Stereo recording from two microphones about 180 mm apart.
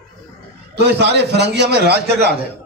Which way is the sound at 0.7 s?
70° right (ahead or behind).